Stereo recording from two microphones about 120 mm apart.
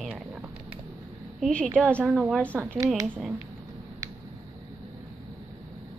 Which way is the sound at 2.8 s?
30° right (ahead or behind).